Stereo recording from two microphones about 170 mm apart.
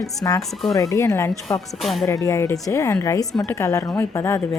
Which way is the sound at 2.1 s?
15° left (ahead or behind).